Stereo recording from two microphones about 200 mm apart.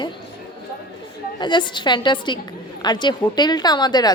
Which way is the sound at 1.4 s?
25° left (ahead or behind).